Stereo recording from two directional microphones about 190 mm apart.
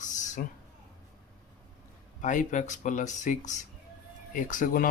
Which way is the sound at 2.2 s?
40° left (ahead or behind).